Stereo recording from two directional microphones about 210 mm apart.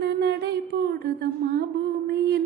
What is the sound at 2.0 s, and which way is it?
Mantra, 50° right (ahead or behind).